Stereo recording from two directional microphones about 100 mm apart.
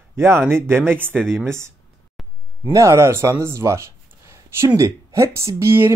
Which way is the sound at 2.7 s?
30° right (ahead or behind).